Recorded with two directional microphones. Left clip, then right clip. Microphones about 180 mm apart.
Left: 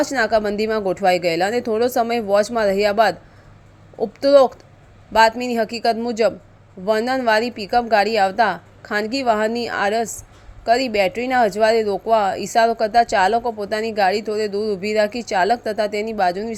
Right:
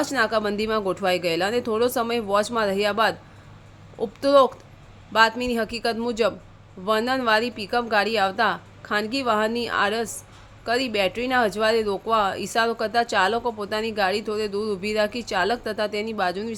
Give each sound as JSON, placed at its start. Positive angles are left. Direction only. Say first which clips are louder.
{"t": 0.0, "sound": "speech", "louder": "left 4 dB", "side_deg": 15}